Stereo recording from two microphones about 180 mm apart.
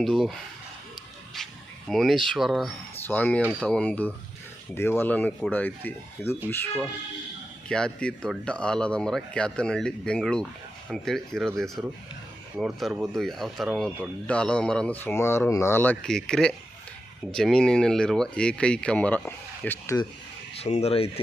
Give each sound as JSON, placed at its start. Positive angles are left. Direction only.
{"t": 0.0, "sound": "speech", "side_deg": 0}
{"t": 1.9, "sound": "speech", "side_deg": 0}
{"t": 3.0, "sound": "speech", "side_deg": 10}
{"t": 20.6, "sound": "speech", "side_deg": 35}